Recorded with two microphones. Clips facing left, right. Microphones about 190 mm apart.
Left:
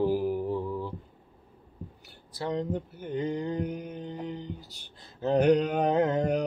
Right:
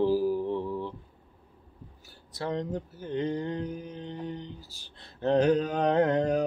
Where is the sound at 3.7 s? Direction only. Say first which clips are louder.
Left 2 dB; 65° left (ahead or behind).